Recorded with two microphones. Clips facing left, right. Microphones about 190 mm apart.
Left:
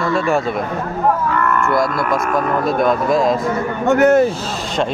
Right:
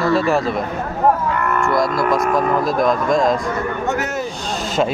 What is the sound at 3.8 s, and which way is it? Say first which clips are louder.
Speech: left 15 dB; 55° left (ahead or behind).